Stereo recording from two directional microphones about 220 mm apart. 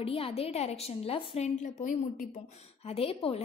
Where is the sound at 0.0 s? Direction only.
25° left (ahead or behind).